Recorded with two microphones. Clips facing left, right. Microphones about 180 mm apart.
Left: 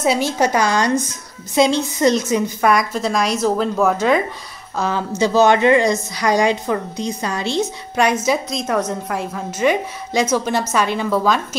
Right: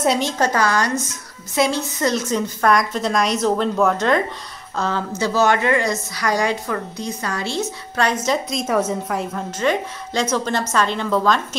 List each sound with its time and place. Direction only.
0.0 s a woman's voice: 5° left (ahead or behind)